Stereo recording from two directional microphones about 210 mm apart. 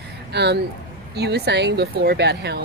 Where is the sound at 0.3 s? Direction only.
55° right (ahead or behind).